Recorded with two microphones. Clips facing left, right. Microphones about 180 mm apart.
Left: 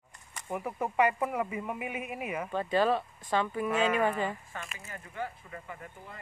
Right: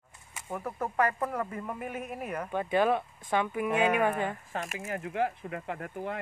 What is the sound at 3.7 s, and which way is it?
Speech, 60° right (ahead or behind).